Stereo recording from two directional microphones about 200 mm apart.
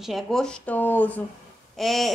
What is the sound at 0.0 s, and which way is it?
Speech, centre (ahead or behind).